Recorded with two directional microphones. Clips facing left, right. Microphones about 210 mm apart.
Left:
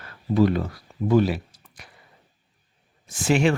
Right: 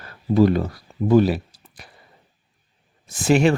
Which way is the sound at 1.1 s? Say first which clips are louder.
Right 4 dB; 35° right (ahead or behind).